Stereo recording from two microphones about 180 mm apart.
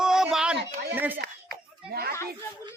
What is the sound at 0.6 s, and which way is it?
Speech, 65° right (ahead or behind).